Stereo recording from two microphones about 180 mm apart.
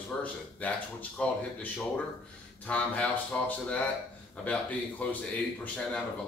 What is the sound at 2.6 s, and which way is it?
Speech, 10° left (ahead or behind).